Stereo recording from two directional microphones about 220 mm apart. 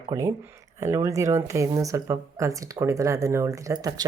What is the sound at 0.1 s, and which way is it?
Speech, 15° right (ahead or behind).